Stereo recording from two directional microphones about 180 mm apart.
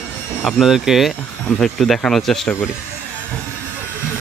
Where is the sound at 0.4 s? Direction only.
Centre (ahead or behind).